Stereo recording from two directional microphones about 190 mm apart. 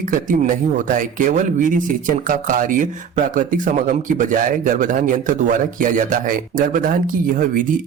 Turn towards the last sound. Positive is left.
turn(degrees=-45)  # may be behind; listen again after turning